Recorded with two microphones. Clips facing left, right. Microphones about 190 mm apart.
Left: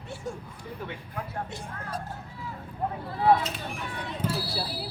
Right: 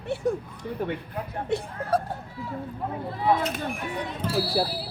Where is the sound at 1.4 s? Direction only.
65° right (ahead or behind).